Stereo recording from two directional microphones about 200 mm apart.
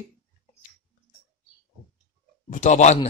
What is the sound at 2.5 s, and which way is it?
Speech, 40° left (ahead or behind).